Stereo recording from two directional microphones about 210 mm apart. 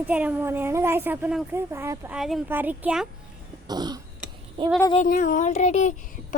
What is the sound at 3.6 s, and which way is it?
Throat clearing, 20° right (ahead or behind).